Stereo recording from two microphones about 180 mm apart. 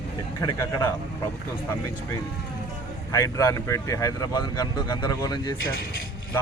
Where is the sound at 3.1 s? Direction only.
15° left (ahead or behind).